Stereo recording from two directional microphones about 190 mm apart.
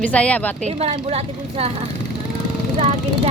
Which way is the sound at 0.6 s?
35° right (ahead or behind).